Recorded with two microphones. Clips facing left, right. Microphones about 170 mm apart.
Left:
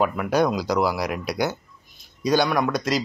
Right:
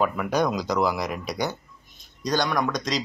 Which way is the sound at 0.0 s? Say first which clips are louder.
Left 2 dB; 5° left (ahead or behind).